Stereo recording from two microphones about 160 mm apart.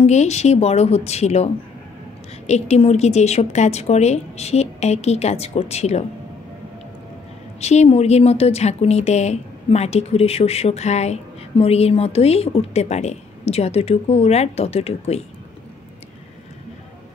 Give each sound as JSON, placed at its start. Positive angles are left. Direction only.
{"t": 0.0, "sound": "a woman's voice", "side_deg": 45}
{"t": 7.6, "sound": "speech", "side_deg": 45}